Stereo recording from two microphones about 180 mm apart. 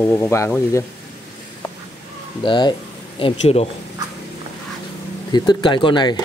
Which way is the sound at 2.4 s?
25° left (ahead or behind).